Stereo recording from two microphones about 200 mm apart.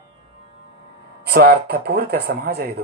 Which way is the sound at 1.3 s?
50° right (ahead or behind).